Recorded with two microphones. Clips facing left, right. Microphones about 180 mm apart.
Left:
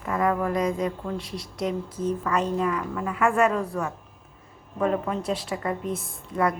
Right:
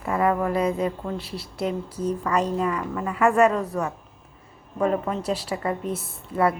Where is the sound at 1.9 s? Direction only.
30° right (ahead or behind).